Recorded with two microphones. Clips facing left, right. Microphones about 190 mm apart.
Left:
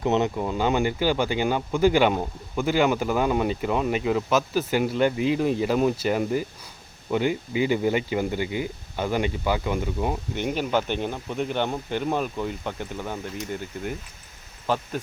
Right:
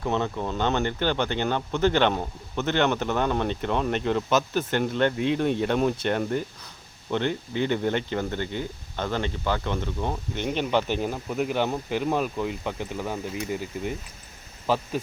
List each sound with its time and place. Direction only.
0.0 s speech: 20° left (ahead or behind)
0.3 s speech: 10° left (ahead or behind)